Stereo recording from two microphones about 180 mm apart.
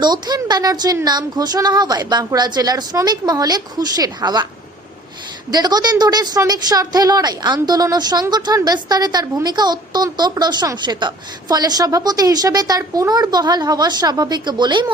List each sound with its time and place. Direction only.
0.0 s a woman's voice: 25° right (ahead or behind)
5.5 s a woman's voice: 20° right (ahead or behind)